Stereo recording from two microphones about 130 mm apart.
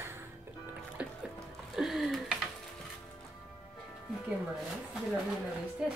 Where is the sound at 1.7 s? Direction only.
Centre (ahead or behind).